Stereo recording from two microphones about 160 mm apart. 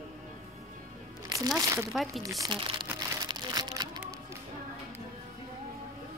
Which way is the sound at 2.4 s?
30° right (ahead or behind).